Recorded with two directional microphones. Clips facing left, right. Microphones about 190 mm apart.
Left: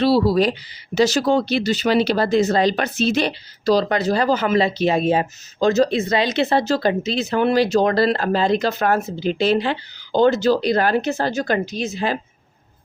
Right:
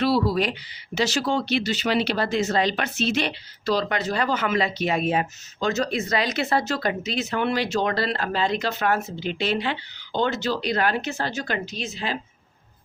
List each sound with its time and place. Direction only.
0.0 s speech: 35° left (ahead or behind)